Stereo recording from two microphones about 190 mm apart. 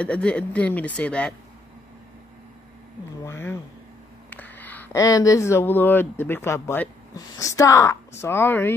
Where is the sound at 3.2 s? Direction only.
15° left (ahead or behind).